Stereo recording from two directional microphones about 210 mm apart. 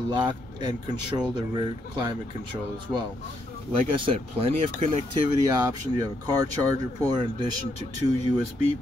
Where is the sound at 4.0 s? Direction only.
25° right (ahead or behind).